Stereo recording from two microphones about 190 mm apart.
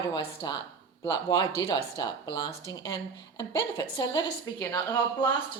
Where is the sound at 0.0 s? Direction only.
20° left (ahead or behind).